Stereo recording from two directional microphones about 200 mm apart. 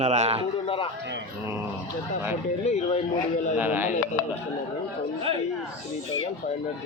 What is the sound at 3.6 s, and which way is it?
Speech, 10° right (ahead or behind).